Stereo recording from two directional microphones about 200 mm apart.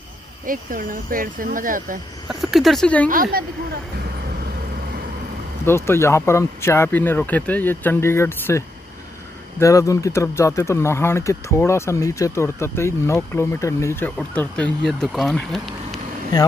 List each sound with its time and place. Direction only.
0.5 s speech: 45° right (ahead or behind)
2.5 s speech: centre (ahead or behind)
3.1 s speech: 45° right (ahead or behind)
5.7 s speech: 15° left (ahead or behind)